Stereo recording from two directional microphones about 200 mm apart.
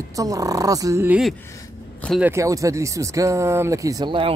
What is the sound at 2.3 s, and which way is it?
Speech, 15° right (ahead or behind).